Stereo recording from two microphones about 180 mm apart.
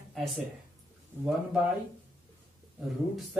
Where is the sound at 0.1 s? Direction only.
Centre (ahead or behind).